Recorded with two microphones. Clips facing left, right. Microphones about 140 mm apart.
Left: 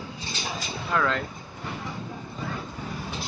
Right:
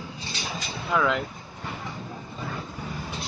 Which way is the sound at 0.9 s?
5° right (ahead or behind).